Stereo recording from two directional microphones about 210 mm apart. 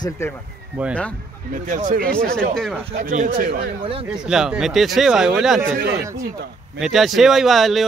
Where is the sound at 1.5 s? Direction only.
40° right (ahead or behind).